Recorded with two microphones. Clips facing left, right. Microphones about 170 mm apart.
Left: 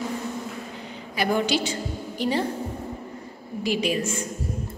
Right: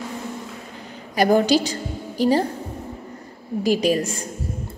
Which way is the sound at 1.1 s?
40° right (ahead or behind).